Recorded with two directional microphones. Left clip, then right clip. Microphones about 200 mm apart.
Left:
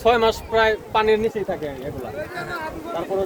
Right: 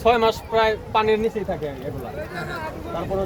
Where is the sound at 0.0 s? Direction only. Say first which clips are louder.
Left 1 dB; 5° left (ahead or behind).